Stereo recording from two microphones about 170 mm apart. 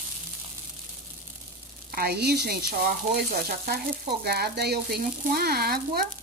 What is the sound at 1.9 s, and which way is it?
Speech, 65° right (ahead or behind).